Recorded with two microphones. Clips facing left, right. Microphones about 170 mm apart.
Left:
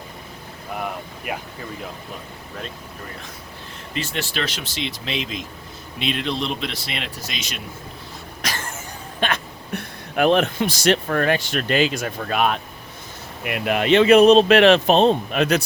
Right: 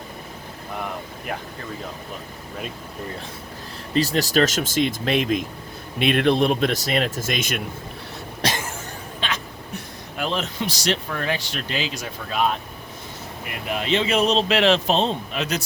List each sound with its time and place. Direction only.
1.3 s speech: 10° left (ahead or behind)
3.9 s speech: 35° right (ahead or behind)
8.4 s a sound: 30° right (ahead or behind)
9.2 s speech: 60° left (ahead or behind)